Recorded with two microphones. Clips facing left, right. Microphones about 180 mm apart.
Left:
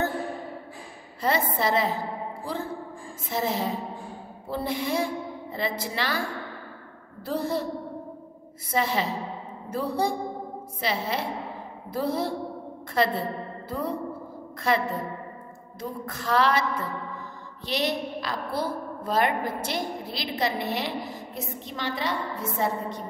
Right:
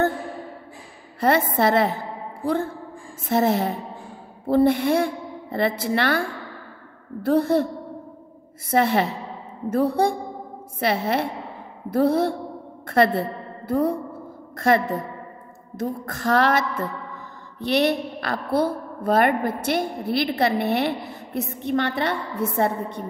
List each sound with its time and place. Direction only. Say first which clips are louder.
1.2 s a woman's voice: right 6 dB; 60° right (ahead or behind)
3.3 s a woman's voice: right 7 dB; 60° right (ahead or behind)
7.2 s a woman's voice: right 9 dB; 60° right (ahead or behind)
8.6 s a woman's voice: right 6 dB; 55° right (ahead or behind)
14.6 s a sound: right 5 dB; 50° right (ahead or behind)
17.6 s a woman's voice: right 7 dB; 60° right (ahead or behind)